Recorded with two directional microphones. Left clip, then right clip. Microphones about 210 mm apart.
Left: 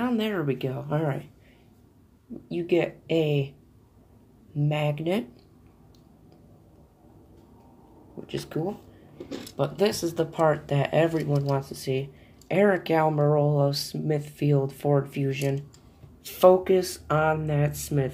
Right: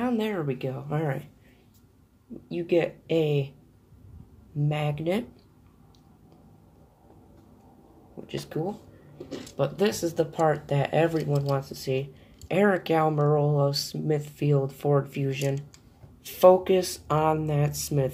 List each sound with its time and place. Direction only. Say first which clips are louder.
0.0 s speech: left 1 dB; 10° left (ahead or behind)
2.4 s speech: even; 5° left (ahead or behind)
4.6 s speech: left 2 dB; 5° left (ahead or behind)
8.3 s speech: left 1 dB; 5° left (ahead or behind)
9.3 s speech: left 1 dB; 20° left (ahead or behind)
9.6 s speech: left 1 dB; centre (ahead or behind)